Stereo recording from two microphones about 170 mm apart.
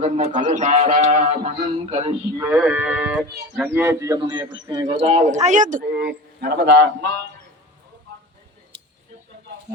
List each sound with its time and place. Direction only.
0.3 s a man's voice: 45° right (ahead or behind)
2.4 s speech: 10° right (ahead or behind)
4.2 s a man's voice: 25° right (ahead or behind)
4.9 s a man's voice: 40° right (ahead or behind); by 7.2 s 85° right